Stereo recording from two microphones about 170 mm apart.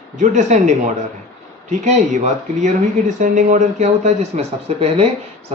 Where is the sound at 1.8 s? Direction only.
45° right (ahead or behind).